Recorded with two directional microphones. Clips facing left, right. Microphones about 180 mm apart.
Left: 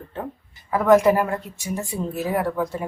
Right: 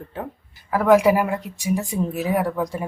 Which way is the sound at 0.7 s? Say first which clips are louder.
Even; 10° right (ahead or behind).